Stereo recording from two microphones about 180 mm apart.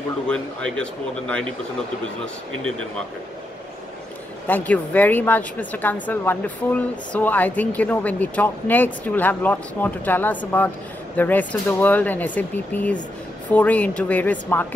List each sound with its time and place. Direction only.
0.3 s speech: 5° left (ahead or behind)
4.5 s speech: 10° left (ahead or behind)